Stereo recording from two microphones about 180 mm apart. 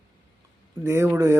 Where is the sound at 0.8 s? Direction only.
15° right (ahead or behind).